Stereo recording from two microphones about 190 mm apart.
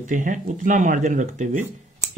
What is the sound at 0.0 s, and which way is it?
Speech, 45° right (ahead or behind).